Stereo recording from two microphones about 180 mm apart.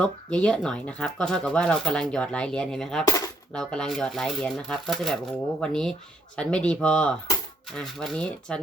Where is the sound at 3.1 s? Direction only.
20° left (ahead or behind).